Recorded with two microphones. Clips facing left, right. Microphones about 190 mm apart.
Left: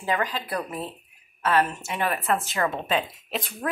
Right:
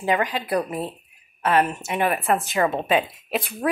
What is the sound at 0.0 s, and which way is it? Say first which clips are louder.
A woman's voice: right 4 dB; 15° right (ahead or behind).